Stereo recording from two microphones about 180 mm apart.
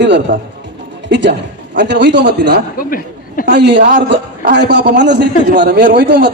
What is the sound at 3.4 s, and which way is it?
A child's voice, 75° right (ahead or behind).